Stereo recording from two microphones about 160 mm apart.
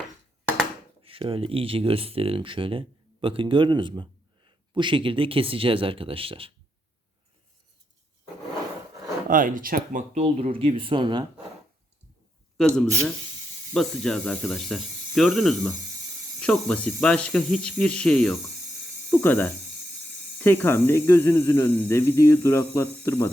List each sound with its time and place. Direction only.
1.0 s speech: 35° right (ahead or behind)
9.3 s speech: 55° right (ahead or behind)
10.2 s speech: 40° right (ahead or behind)
12.5 s speech: 5° left (ahead or behind)